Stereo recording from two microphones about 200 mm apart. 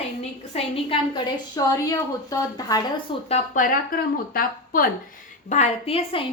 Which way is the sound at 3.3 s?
45° left (ahead or behind).